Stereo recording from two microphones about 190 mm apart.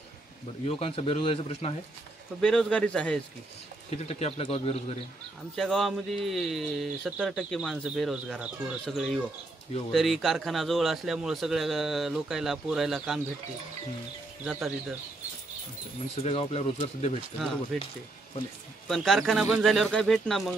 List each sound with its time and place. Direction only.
0.7 s speech: 30° left (ahead or behind)
2.4 s speech: 5° left (ahead or behind)
3.9 s speech: 35° left (ahead or behind)
5.6 s speech: centre (ahead or behind)
14.4 s speech: 5° right (ahead or behind)
16.2 s speech: 35° left (ahead or behind)
18.9 s speech: centre (ahead or behind)